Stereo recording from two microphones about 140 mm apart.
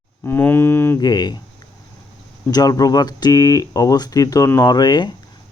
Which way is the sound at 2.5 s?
25° left (ahead or behind).